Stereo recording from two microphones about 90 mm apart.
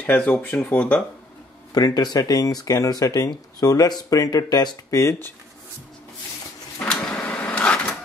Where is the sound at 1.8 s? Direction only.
45° left (ahead or behind).